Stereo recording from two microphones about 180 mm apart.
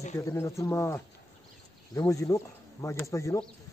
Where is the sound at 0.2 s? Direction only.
15° left (ahead or behind).